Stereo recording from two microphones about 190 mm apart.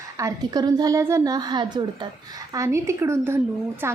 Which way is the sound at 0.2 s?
20° right (ahead or behind).